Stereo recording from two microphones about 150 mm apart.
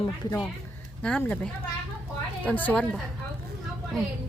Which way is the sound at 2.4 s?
10° left (ahead or behind).